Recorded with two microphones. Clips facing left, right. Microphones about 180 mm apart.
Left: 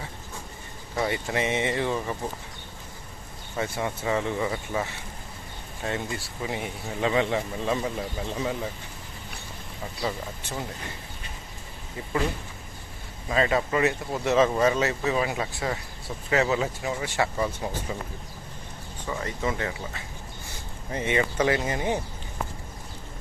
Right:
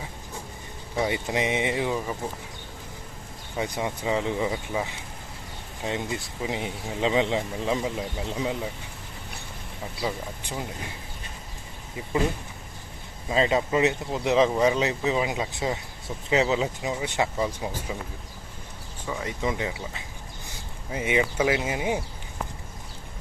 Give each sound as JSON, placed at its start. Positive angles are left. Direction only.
{"t": 0.9, "sound": "speech", "side_deg": -15}
{"t": 3.6, "sound": "speech", "side_deg": -15}
{"t": 10.0, "sound": "speech", "side_deg": -15}
{"t": 13.2, "sound": "speech", "side_deg": -20}
{"t": 19.0, "sound": "speech", "side_deg": -5}